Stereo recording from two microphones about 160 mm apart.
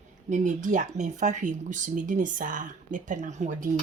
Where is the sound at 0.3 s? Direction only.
50° right (ahead or behind).